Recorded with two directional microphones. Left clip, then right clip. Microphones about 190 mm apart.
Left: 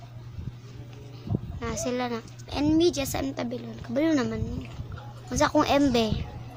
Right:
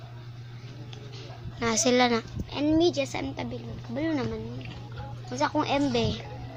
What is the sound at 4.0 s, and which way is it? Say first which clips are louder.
A woman's voice: left 5 dB; 45° left (ahead or behind).